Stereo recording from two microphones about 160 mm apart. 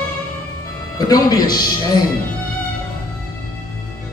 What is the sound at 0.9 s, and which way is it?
Speech, 25° left (ahead or behind).